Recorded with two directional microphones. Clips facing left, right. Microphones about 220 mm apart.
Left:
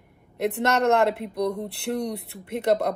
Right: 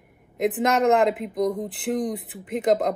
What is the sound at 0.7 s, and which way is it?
Speech, centre (ahead or behind).